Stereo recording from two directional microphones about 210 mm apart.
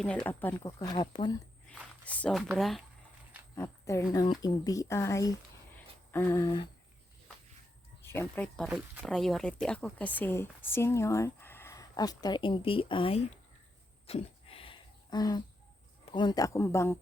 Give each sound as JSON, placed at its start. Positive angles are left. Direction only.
{"t": 0.0, "sound": "speech", "side_deg": 5}
{"t": 1.6, "sound": "speech", "side_deg": 5}
{"t": 3.5, "sound": "speech", "side_deg": 15}
{"t": 5.7, "sound": "a sound", "side_deg": 10}
{"t": 8.0, "sound": "speech", "side_deg": 10}
{"t": 14.1, "sound": "a sound", "side_deg": 25}
{"t": 16.1, "sound": "speech", "side_deg": 20}